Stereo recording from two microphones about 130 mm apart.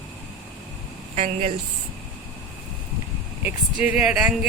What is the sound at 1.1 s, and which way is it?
Speech, 55° right (ahead or behind).